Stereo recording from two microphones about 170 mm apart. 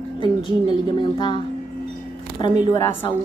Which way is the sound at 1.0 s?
30° left (ahead or behind).